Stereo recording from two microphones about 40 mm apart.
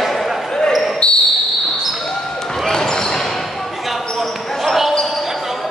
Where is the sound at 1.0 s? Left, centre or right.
Left.